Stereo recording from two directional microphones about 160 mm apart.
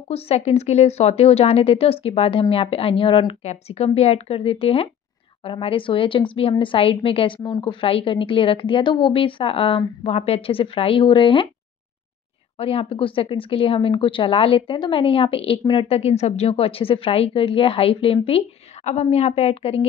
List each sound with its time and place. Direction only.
0.1 s speech: 40° left (ahead or behind)
12.5 s speech: 35° left (ahead or behind)